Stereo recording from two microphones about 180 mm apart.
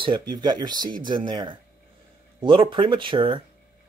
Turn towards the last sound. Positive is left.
turn(degrees=-30)  # may be behind; listen again after turning